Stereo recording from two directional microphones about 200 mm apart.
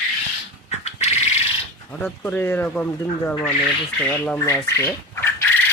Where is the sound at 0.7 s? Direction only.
35° left (ahead or behind).